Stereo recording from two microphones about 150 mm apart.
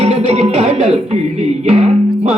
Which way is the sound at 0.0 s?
50° right (ahead or behind).